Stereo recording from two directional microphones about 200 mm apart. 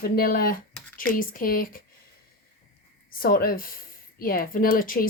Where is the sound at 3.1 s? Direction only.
45° left (ahead or behind).